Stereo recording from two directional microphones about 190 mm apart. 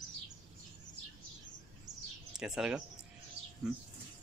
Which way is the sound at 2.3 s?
5° right (ahead or behind).